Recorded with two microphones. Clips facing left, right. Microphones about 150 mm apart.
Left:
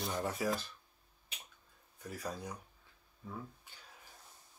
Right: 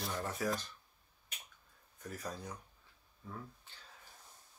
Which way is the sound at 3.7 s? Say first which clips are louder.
Left 1 dB; 10° left (ahead or behind).